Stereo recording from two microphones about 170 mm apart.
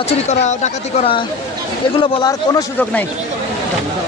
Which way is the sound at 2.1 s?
20° left (ahead or behind).